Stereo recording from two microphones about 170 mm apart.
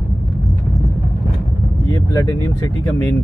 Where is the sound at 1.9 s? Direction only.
20° left (ahead or behind).